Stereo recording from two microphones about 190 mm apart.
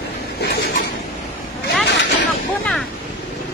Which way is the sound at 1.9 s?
65° left (ahead or behind).